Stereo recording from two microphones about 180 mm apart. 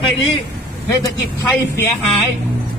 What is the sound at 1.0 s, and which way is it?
Speech, 15° left (ahead or behind).